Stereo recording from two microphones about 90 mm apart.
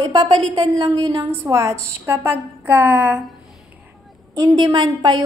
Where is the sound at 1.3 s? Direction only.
30° right (ahead or behind); by 3.2 s 15° right (ahead or behind).